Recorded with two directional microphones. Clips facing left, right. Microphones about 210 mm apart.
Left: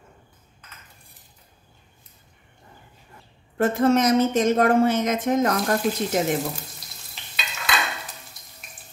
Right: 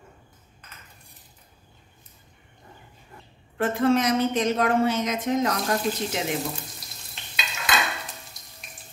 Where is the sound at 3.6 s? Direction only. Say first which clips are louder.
Left 3 dB; 45° left (ahead or behind).